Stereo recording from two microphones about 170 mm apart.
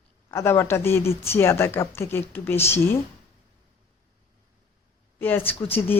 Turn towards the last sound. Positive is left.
turn(degrees=10)  # may be behind; listen again after turning